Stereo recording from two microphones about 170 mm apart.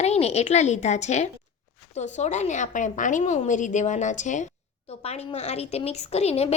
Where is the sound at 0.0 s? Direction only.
40° left (ahead or behind).